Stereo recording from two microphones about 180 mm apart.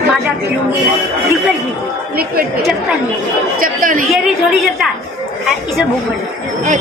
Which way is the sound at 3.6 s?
50° right (ahead or behind).